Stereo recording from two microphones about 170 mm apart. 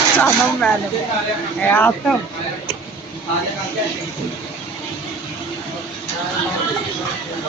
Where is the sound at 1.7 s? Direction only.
10° left (ahead or behind).